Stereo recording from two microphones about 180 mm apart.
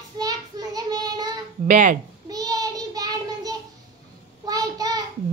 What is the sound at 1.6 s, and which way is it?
Speech, 45° right (ahead or behind).